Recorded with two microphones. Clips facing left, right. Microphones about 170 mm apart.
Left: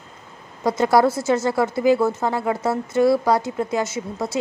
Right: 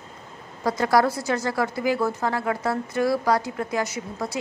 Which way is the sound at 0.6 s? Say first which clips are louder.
Left 4 dB; 25° left (ahead or behind).